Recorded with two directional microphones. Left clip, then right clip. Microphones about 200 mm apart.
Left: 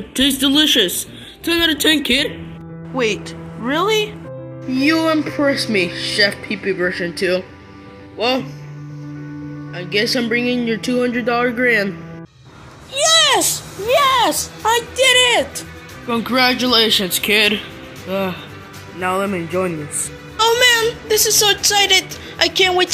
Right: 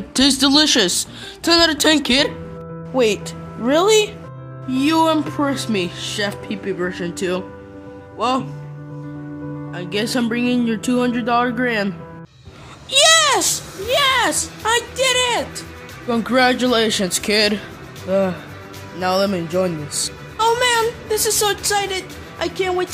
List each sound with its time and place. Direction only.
0.2 s speech: 30° right (ahead or behind)
9.8 s speech: 35° right (ahead or behind)
13.2 s a woman's voice: centre (ahead or behind)
16.1 s speech: 25° right (ahead or behind)
20.3 s a sound: 5° right (ahead or behind)
21.8 s a woman's voice: centre (ahead or behind)